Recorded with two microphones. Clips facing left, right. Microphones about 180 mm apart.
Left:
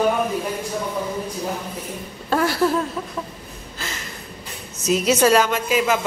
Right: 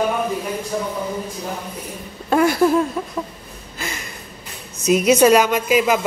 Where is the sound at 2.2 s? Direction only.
15° right (ahead or behind).